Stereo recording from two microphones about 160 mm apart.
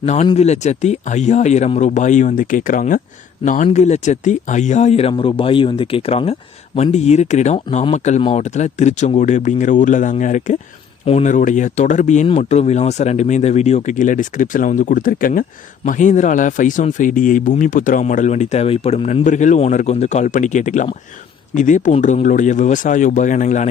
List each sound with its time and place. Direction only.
0.0 s speech: 45° left (ahead or behind)